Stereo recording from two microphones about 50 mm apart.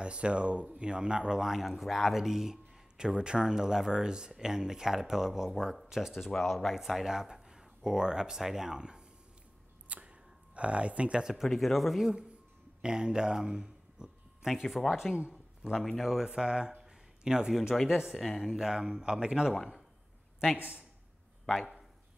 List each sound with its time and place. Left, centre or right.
0.0 s speech: right
9.8 s a sound: right
11.5 s speech: centre
12.8 s speech: centre
16.8 s a sound: centre
17.8 s speech: centre
18.1 s speech: centre
18.4 s speech: centre
21.5 s speech: centre